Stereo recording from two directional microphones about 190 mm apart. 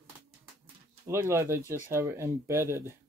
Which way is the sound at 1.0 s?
15° right (ahead or behind).